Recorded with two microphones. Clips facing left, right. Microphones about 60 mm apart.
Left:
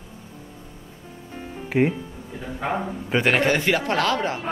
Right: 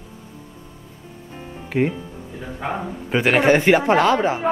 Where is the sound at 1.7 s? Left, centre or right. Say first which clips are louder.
Even; centre.